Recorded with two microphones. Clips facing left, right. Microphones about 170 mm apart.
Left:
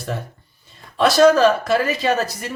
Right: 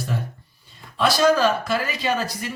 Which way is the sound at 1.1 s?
50° left (ahead or behind).